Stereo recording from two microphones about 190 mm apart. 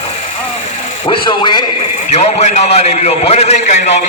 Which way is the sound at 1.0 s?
25° left (ahead or behind).